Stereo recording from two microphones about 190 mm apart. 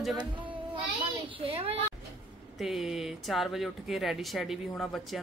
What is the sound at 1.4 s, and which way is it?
Speech, 30° right (ahead or behind).